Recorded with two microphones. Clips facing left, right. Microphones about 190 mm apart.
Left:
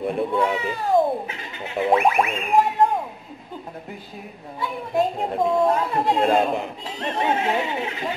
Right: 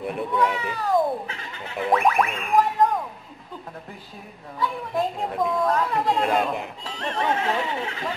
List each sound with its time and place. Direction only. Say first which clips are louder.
0.0 s a woman's voice: left 2 dB; 30° left (ahead or behind)
4.6 s a woman's voice: left 3 dB; 25° left (ahead or behind)